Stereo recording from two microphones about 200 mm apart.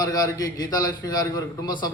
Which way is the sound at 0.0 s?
20° left (ahead or behind).